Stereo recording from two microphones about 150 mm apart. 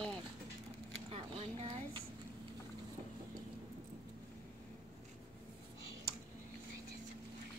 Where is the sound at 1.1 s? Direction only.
40° right (ahead or behind).